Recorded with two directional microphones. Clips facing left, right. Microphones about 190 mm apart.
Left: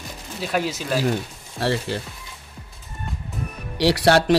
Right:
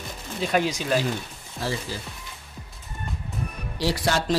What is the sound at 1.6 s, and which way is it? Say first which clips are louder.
Speech: left 6 dB; 65° left (ahead or behind).